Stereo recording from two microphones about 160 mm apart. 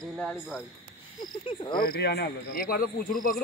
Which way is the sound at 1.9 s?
90° left.